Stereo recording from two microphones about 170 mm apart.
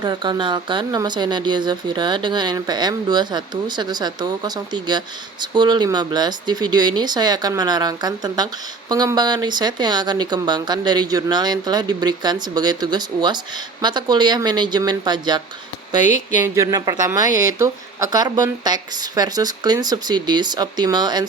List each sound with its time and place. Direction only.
0.0 s speech: 25° right (ahead or behind)
16.0 s speech: 45° left (ahead or behind)
16.4 s speech: 20° right (ahead or behind)